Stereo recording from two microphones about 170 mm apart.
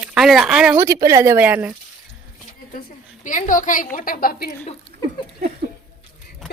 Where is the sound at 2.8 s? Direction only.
50° left (ahead or behind).